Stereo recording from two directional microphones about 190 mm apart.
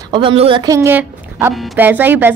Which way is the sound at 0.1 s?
25° right (ahead or behind).